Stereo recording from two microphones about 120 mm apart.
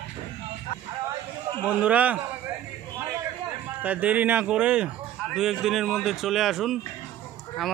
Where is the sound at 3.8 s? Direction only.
15° right (ahead or behind).